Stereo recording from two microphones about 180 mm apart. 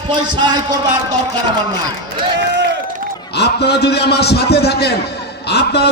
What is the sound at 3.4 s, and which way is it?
A man's voice, 65° left (ahead or behind).